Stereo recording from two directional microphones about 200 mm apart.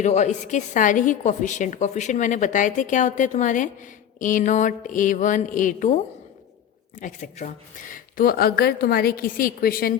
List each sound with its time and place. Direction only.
0.0 s a woman's voice: 35° left (ahead or behind)
7.0 s speech: 35° left (ahead or behind)